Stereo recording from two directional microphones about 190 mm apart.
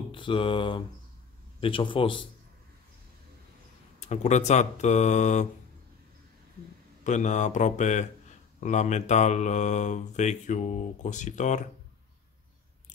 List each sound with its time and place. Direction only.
0.1 s a sound: 25° left (ahead or behind)
4.0 s speech: 35° left (ahead or behind)
7.1 s speech: 40° left (ahead or behind)